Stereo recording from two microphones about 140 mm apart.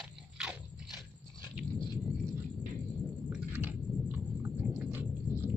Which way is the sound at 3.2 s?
10° right (ahead or behind).